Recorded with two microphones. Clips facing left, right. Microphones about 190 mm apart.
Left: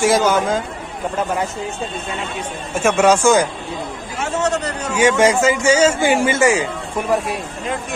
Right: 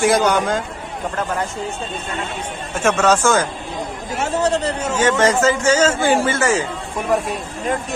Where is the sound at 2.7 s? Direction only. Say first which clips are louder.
Left 2 dB; 10° left (ahead or behind).